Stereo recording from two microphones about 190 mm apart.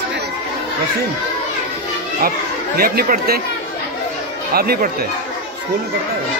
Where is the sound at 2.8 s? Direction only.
50° right (ahead or behind).